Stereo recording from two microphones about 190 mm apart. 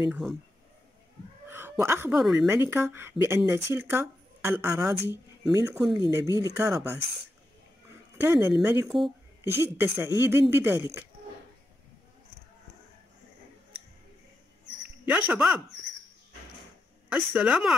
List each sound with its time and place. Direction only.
0.1 s speech: centre (ahead or behind)
1.5 s a woman's voice: 10° right (ahead or behind)
8.2 s speech: 15° right (ahead or behind)
15.0 s speech: 5° right (ahead or behind)
17.1 s speech: 5° right (ahead or behind)